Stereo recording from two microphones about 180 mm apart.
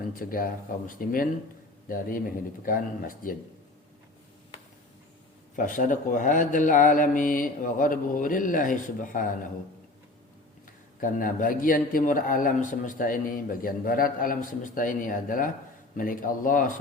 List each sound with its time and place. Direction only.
0.2 s a man's voice: 50° left (ahead or behind)
5.5 s a man's voice: 45° left (ahead or behind)
11.0 s a man's voice: 50° left (ahead or behind)